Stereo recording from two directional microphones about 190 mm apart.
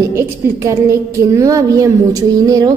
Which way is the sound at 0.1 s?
15° right (ahead or behind).